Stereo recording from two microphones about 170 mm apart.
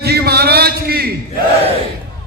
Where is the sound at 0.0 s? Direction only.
70° right (ahead or behind).